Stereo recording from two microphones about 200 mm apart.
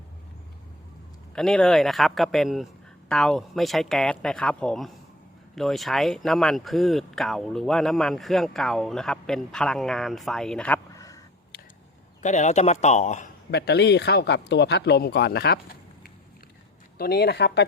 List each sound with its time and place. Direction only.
1.4 s speech: 5° left (ahead or behind)
10.9 s a sound: 15° left (ahead or behind)
12.2 s speech: 35° left (ahead or behind)
13.5 s speech: 55° left (ahead or behind)
17.0 s speech: 50° left (ahead or behind)